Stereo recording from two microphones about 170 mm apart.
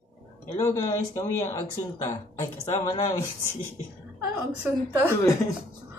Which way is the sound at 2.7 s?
15° left (ahead or behind).